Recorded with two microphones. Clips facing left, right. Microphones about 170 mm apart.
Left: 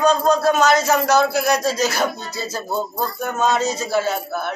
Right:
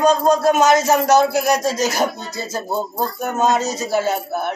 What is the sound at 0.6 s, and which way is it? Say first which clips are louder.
Speech: right 2 dB; 20° right (ahead or behind).